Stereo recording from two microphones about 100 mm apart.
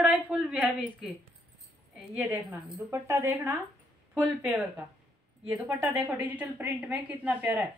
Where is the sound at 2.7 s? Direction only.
25° right (ahead or behind).